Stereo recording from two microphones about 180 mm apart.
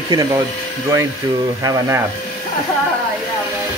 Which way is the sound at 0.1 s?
20° right (ahead or behind).